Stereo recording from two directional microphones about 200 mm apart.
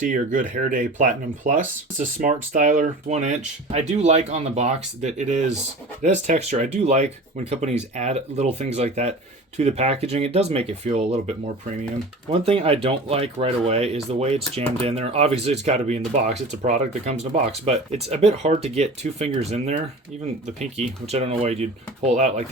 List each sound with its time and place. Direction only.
0.0 s speech: 40° right (ahead or behind)